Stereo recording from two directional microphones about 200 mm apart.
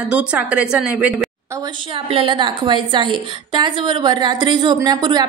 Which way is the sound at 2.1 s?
25° right (ahead or behind).